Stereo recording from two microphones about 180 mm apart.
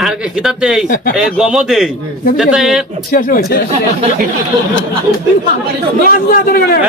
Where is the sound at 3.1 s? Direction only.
50° left (ahead or behind).